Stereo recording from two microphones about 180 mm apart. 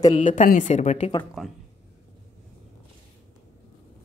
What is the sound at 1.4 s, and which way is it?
Speech, centre (ahead or behind).